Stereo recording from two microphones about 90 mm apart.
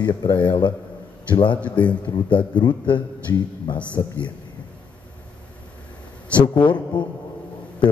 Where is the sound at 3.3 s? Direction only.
35° left (ahead or behind).